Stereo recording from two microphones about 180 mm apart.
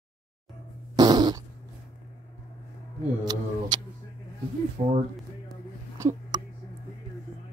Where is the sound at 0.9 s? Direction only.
25° right (ahead or behind).